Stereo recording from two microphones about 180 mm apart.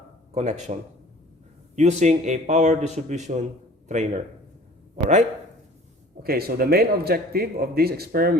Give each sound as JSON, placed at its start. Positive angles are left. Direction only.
{"t": 0.3, "sound": "a man's voice", "side_deg": -40}
{"t": 6.2, "sound": "a man's voice", "side_deg": -60}